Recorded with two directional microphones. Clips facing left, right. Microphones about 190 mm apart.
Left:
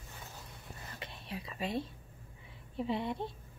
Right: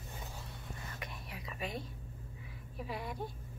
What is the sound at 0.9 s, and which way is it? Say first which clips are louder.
Whispering: left 3 dB; 25° left (ahead or behind).